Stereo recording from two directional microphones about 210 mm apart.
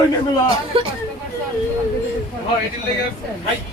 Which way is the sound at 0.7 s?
25° right (ahead or behind).